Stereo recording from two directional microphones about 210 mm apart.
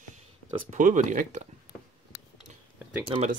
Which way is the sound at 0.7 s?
40° right (ahead or behind).